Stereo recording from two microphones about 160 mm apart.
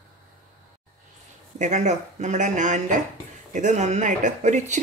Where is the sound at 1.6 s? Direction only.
45° right (ahead or behind).